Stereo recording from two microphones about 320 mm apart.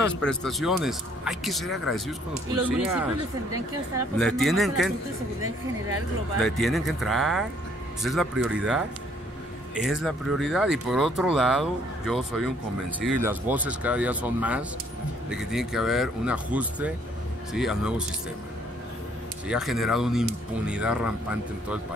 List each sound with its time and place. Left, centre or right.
0.2 s speech: centre
4.2 s speech: centre
6.4 s speech: centre
19.4 s speech: centre